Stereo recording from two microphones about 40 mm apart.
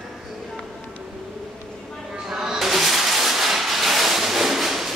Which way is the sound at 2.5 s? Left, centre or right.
Centre.